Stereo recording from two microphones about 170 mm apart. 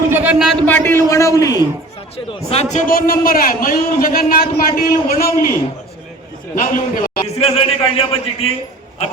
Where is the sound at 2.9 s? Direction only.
60° left (ahead or behind).